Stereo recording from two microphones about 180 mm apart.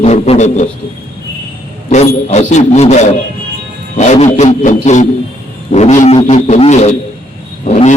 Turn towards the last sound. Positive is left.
turn(degrees=35)  # may be behind; listen again after turning